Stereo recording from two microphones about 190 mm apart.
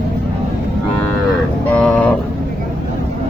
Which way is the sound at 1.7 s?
10° left (ahead or behind).